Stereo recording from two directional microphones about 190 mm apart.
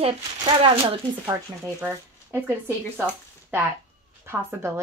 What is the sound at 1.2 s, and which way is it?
A woman's voice, 15° right (ahead or behind).